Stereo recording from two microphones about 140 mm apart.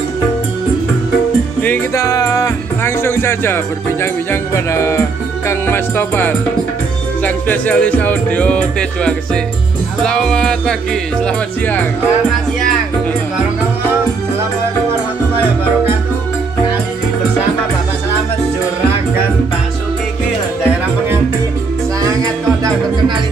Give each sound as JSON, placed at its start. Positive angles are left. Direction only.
{"t": 2.0, "sound": "speech", "side_deg": 25}
{"t": 5.5, "sound": "music", "side_deg": 15}
{"t": 10.0, "sound": "speech", "side_deg": 5}
{"t": 22.0, "sound": "music", "side_deg": -25}